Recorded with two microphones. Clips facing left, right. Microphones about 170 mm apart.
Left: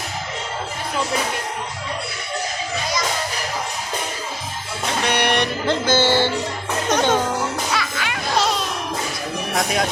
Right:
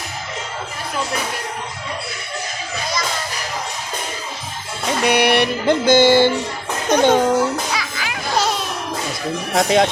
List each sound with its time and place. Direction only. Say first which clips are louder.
5.0 s music: right 5 dB; 10° right (ahead or behind)
7.7 s children playing: left 1 dB; centre (ahead or behind)
9.6 s speech: right 7 dB; 25° right (ahead or behind)